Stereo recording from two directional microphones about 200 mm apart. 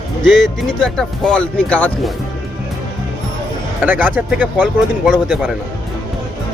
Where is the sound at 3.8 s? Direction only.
10° right (ahead or behind).